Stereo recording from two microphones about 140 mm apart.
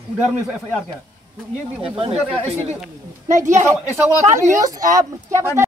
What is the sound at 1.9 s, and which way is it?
Speech, 50° right (ahead or behind).